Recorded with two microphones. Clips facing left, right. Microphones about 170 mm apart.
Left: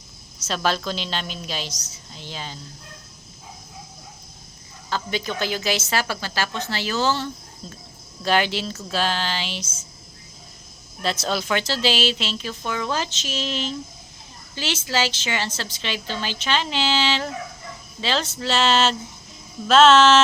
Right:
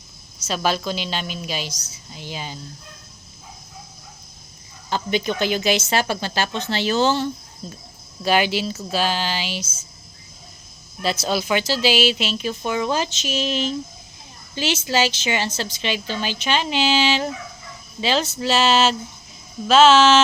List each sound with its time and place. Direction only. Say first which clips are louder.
0.4 s speech: right 1 dB; 5° right (ahead or behind)
4.9 s speech: right 4 dB; 20° right (ahead or behind)
11.0 s a woman's voice: right 2 dB; 5° right (ahead or behind)